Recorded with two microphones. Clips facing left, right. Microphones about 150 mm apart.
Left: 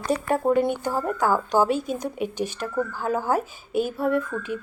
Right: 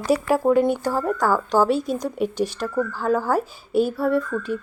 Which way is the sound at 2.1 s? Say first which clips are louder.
Right 4 dB; 50° left (ahead or behind).